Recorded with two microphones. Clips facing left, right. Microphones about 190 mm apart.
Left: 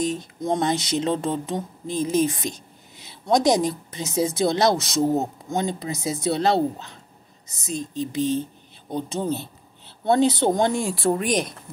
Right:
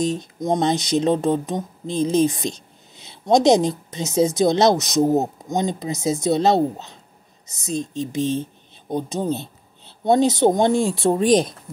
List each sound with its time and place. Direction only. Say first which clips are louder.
0.0 s speech: right 3 dB; 20° right (ahead or behind)
10.4 s speech: right 4 dB; 20° right (ahead or behind)